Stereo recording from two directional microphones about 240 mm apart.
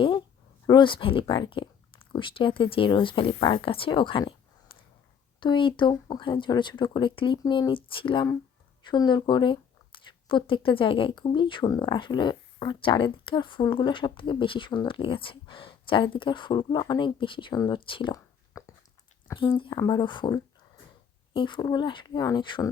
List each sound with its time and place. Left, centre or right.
0.7 s speech: centre